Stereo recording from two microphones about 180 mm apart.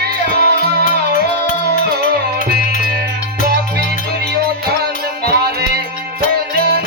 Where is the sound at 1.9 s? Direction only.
60° right (ahead or behind).